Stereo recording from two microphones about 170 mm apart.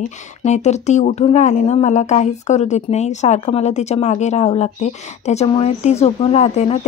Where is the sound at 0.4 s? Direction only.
40° left (ahead or behind).